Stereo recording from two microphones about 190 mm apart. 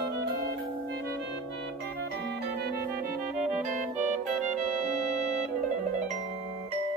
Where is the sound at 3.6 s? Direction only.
40° right (ahead or behind).